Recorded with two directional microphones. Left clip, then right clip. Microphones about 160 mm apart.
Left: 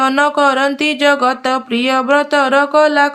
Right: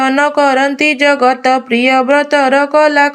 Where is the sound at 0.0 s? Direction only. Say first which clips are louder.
Right 1 dB; 10° right (ahead or behind).